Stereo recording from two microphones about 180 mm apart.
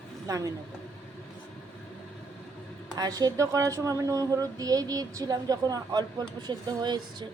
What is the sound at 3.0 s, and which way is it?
A woman's voice, 20° right (ahead or behind).